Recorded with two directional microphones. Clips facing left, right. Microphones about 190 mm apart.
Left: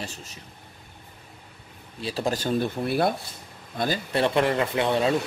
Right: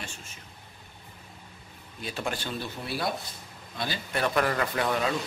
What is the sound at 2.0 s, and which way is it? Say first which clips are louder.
Speech: left 6 dB; 35° left (ahead or behind).